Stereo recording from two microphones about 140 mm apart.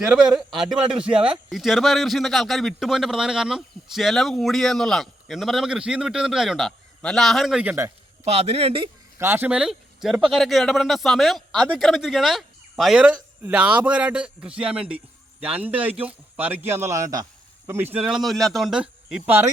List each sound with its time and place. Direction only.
0.1 s a man's voice: 5° right (ahead or behind)
8.2 s speech: 50° right (ahead or behind)
9.1 s a man's voice: 15° right (ahead or behind)